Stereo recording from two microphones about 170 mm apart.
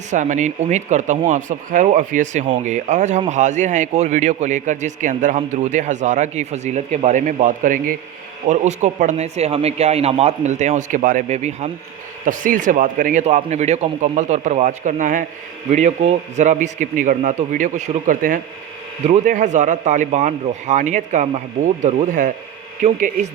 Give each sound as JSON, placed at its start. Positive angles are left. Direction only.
{"t": 0.1, "sound": "a man's voice", "side_deg": -45}